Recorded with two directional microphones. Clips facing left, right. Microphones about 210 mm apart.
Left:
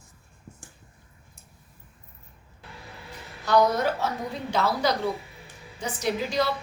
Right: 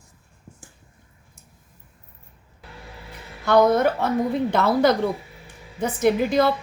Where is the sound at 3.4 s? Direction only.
55° right (ahead or behind).